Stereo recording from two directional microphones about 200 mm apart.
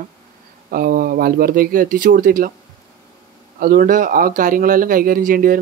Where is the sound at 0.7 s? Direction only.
45° right (ahead or behind).